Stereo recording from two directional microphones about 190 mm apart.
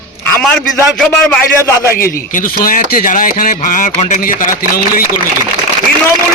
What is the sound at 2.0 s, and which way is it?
Speech, 45° left (ahead or behind).